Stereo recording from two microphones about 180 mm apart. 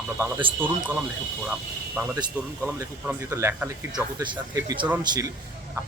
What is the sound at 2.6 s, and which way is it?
Speech, 15° right (ahead or behind).